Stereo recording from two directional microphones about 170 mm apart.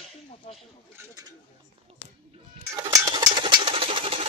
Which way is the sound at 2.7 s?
20° right (ahead or behind).